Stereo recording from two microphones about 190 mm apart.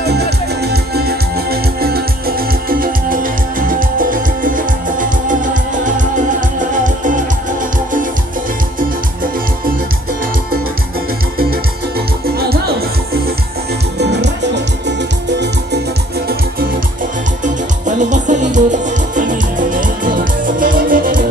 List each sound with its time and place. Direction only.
0.0 s music: 60° right (ahead or behind)
13.9 s music: 65° right (ahead or behind)
17.8 s music: 40° right (ahead or behind)